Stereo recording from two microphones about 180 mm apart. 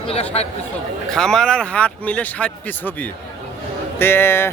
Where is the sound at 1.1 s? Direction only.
5° left (ahead or behind).